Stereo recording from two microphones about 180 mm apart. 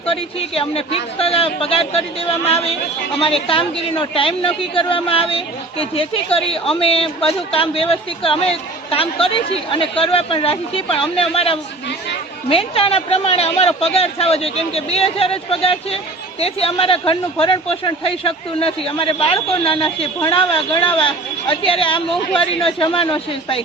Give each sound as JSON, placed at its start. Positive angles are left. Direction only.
{"t": 0.0, "sound": "a woman's voice", "side_deg": 30}
{"t": 3.2, "sound": "a woman's voice", "side_deg": 30}